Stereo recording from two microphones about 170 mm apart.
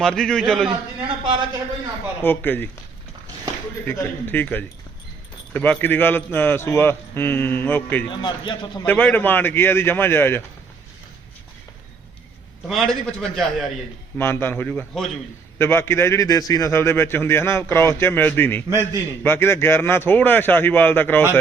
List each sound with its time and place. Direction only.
0.0 s a man's voice: 5° left (ahead or behind)
1.2 s a man's voice: 30° right (ahead or behind)
2.2 s a man's voice: 10° left (ahead or behind)
3.8 s a man's voice: 15° left (ahead or behind)
8.1 s a man's voice: 25° left (ahead or behind)
8.9 s a man's voice: 10° left (ahead or behind)
12.6 s a man's voice: centre (ahead or behind)
14.2 s a man's voice: 15° left (ahead or behind)